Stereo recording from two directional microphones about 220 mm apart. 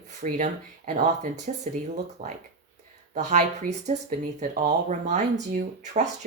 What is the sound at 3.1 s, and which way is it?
Speech, 30° right (ahead or behind).